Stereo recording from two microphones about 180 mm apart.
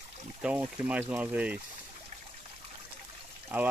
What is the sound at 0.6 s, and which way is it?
Speech, 5° right (ahead or behind).